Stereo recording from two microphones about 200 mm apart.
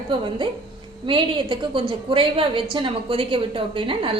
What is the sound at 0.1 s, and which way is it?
A woman's voice, 25° right (ahead or behind).